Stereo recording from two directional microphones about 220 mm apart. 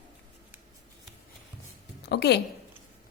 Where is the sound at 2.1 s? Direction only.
50° left (ahead or behind).